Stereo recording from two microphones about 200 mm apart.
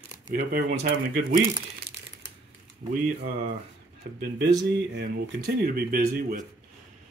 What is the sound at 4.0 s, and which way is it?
Speech, 55° right (ahead or behind).